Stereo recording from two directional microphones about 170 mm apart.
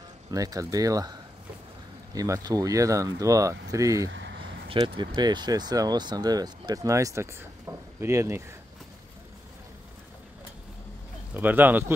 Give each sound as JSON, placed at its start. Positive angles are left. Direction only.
{"t": 0.3, "sound": "speech", "side_deg": -20}
{"t": 4.1, "sound": "a sound", "side_deg": -90}
{"t": 4.4, "sound": "speech", "side_deg": -30}
{"t": 11.3, "sound": "speech", "side_deg": -10}